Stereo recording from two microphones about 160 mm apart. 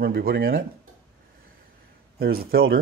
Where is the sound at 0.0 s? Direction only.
70° right (ahead or behind).